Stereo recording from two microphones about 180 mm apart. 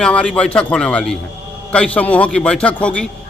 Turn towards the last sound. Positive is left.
turn(degrees=5)  # may be behind; listen again after turning